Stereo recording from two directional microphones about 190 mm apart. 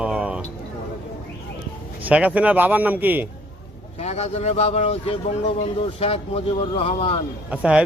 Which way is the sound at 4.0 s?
35° left (ahead or behind).